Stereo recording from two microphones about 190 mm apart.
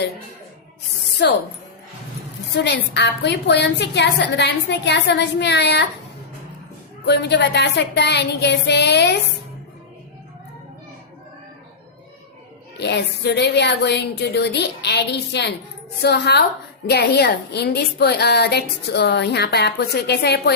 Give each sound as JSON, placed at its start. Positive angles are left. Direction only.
{"t": 1.2, "sound": "a woman's voice", "side_deg": 60}
{"t": 2.5, "sound": "a woman's voice", "side_deg": 65}
{"t": 7.0, "sound": "a woman's voice", "side_deg": 60}
{"t": 12.7, "sound": "a woman's voice", "side_deg": 60}